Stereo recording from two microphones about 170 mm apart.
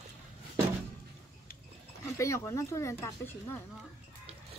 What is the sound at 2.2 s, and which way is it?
Speech, 15° left (ahead or behind).